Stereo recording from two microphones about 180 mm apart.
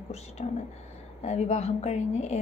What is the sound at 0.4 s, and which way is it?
A woman's voice, 35° left (ahead or behind).